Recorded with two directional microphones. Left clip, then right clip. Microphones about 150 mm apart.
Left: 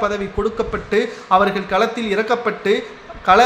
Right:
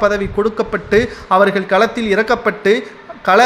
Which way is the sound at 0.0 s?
35° right (ahead or behind).